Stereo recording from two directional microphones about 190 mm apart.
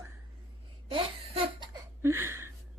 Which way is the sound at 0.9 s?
30° right (ahead or behind).